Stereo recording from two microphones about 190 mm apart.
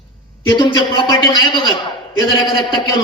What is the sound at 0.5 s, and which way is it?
A man's voice, 25° left (ahead or behind).